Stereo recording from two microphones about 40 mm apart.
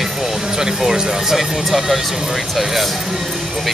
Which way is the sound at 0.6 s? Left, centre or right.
Centre.